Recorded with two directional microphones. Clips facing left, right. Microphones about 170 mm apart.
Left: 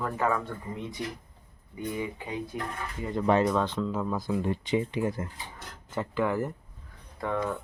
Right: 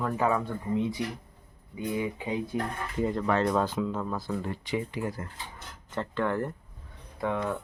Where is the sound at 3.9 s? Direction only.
5° left (ahead or behind); by 5.3 s 20° left (ahead or behind).